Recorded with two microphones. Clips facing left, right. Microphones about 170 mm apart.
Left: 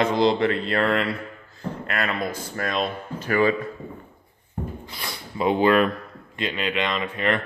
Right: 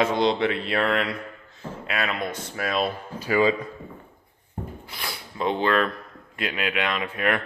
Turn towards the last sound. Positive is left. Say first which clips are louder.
# left 1 dB
turn(degrees=-5)  # may be behind; listen again after turning